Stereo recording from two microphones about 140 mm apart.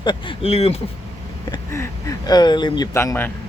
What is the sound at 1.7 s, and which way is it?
Speech, 20° left (ahead or behind).